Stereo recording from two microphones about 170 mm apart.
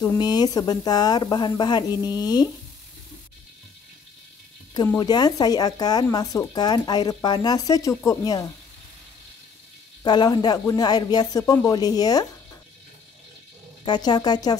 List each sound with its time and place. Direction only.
0.0 s speech: 20° left (ahead or behind)
4.8 s speech: 20° left (ahead or behind)
10.0 s speech: 25° left (ahead or behind)
13.8 s speech: 25° left (ahead or behind)